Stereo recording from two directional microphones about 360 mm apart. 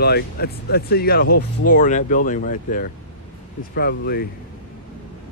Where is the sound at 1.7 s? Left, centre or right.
Left.